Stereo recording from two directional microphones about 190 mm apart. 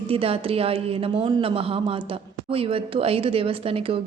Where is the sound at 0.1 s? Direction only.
30° right (ahead or behind).